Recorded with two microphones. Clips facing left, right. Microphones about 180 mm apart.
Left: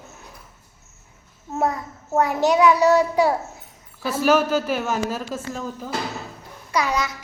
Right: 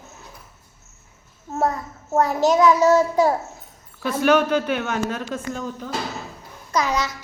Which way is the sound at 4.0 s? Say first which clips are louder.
Right 1 dB; 5° left (ahead or behind).